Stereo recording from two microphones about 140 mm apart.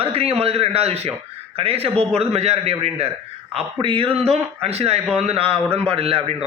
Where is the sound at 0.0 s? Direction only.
45° right (ahead or behind).